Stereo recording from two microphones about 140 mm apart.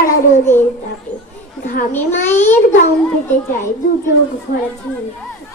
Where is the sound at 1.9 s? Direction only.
15° left (ahead or behind).